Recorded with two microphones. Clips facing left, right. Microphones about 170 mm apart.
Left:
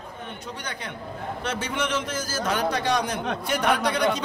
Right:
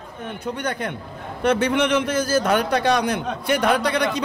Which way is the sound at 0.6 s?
55° right (ahead or behind).